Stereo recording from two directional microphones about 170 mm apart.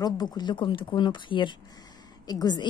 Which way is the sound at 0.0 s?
25° left (ahead or behind).